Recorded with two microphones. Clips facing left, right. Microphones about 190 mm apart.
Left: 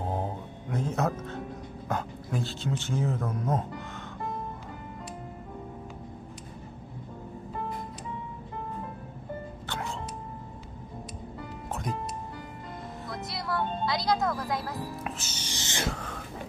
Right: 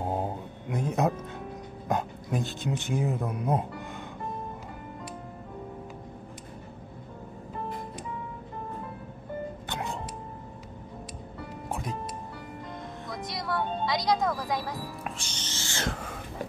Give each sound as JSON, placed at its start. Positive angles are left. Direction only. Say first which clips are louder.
{"t": 0.1, "sound": "a sound", "louder": "right 2 dB", "side_deg": -15}
{"t": 1.9, "sound": "speech", "louder": "right 3 dB", "side_deg": -20}
{"t": 9.7, "sound": "music", "louder": "left 2 dB", "side_deg": -15}
{"t": 11.7, "sound": "music", "louder": "left 1 dB", "side_deg": 0}
{"t": 13.1, "sound": "music", "louder": "right 1 dB", "side_deg": 0}
{"t": 15.9, "sound": "a sound", "louder": "even", "side_deg": -10}